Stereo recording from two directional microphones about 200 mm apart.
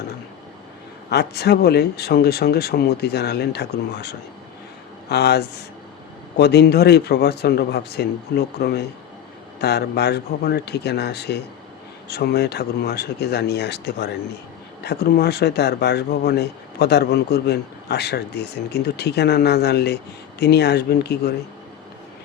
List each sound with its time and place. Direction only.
1.1 s speech: 55° left (ahead or behind)